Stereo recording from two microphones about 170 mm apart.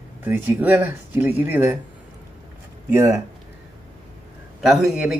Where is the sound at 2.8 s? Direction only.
15° right (ahead or behind).